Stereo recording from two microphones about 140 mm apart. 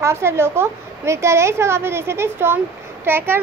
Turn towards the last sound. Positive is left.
turn(degrees=-15)  # may be behind; listen again after turning